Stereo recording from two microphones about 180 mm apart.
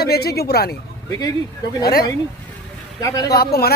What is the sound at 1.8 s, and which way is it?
Speech, 60° left (ahead or behind).